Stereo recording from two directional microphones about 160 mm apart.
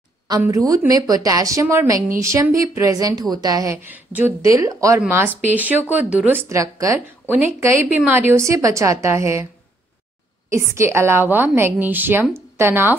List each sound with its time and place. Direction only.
0.4 s a woman's voice: 20° right (ahead or behind)
10.5 s speech: 15° right (ahead or behind)